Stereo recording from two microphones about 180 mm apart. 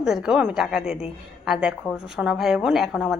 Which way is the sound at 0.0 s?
5° right (ahead or behind).